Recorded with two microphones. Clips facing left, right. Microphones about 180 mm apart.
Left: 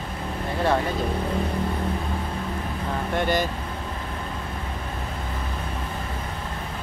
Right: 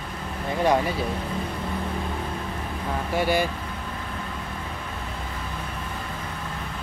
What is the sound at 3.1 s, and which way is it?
Speech, 5° right (ahead or behind).